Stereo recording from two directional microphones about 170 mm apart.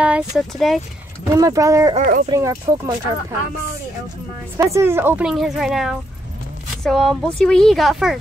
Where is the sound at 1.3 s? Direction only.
20° right (ahead or behind).